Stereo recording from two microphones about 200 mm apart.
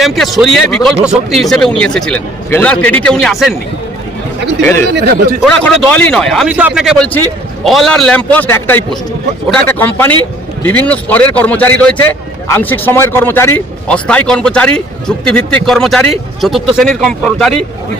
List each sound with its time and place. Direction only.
0.0 s a man's voice: centre (ahead or behind)
4.9 s speech: 50° right (ahead or behind)
5.4 s a man's voice: centre (ahead or behind)